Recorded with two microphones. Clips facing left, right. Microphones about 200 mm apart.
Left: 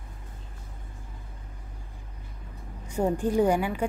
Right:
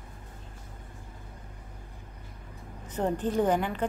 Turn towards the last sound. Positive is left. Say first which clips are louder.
# left 3 dB
turn(degrees=10)  # may be behind; listen again after turning